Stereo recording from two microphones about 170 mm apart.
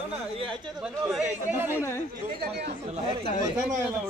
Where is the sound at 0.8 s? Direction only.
5° right (ahead or behind).